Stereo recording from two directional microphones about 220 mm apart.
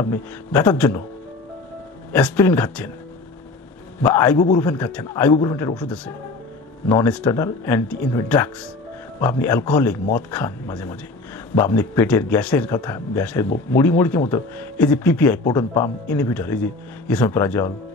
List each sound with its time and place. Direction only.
0.0 s speech: 10° left (ahead or behind)
2.1 s speech: 10° left (ahead or behind)
4.0 s speech: 10° left (ahead or behind)
5.8 s speech: 5° left (ahead or behind)